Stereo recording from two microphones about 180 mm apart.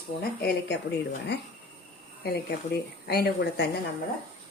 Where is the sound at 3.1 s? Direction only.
65° left (ahead or behind).